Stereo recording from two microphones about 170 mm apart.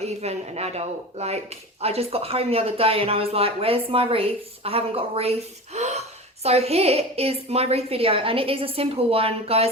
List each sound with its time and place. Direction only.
0.0 s speech: 40° right (ahead or behind)